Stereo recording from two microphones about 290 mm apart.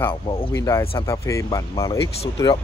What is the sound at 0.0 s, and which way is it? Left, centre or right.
Speech, centre.